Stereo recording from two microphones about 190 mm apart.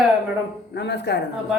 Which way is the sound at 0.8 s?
65° left (ahead or behind).